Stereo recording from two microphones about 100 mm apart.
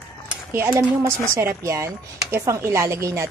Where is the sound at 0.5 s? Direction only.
25° right (ahead or behind).